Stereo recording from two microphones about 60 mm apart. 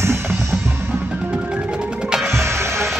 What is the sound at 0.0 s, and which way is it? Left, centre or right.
Music, right.